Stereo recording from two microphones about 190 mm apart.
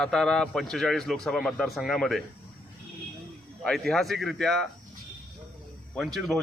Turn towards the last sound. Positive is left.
turn(degrees=0)  # may be behind; listen again after turning